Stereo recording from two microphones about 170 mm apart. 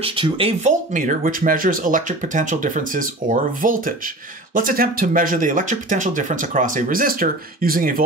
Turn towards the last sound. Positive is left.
turn(degrees=-55)  # may be behind; listen again after turning